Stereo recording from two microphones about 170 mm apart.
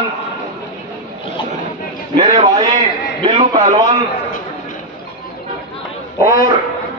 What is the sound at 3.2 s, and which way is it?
Speech, 30° right (ahead or behind).